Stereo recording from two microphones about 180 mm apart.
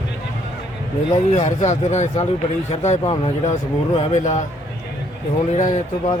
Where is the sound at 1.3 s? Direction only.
40° left (ahead or behind).